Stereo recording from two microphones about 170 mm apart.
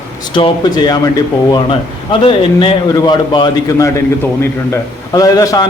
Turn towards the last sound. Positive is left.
turn(degrees=20)  # may be behind; listen again after turning